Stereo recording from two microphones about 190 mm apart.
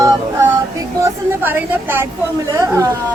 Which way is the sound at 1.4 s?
10° right (ahead or behind).